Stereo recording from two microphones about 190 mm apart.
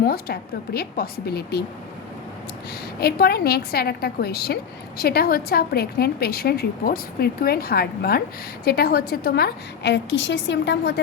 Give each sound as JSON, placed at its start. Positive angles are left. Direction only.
{"t": 0.0, "sound": "a woman's voice", "side_deg": 55}
{"t": 3.0, "sound": "a woman's voice", "side_deg": 55}